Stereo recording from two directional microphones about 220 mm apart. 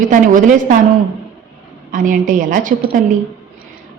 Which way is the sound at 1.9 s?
35° right (ahead or behind).